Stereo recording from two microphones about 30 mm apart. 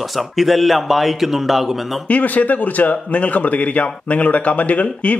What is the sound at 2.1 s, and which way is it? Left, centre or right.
A man's voice, left.